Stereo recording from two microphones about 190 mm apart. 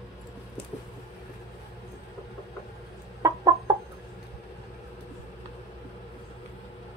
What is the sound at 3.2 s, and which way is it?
Chicken, 20° right (ahead or behind).